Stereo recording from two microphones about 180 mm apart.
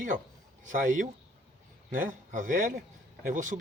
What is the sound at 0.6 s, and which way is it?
Speech, 45° right (ahead or behind).